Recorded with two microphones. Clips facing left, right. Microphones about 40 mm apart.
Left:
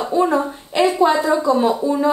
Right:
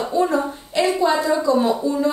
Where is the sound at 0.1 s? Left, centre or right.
Left.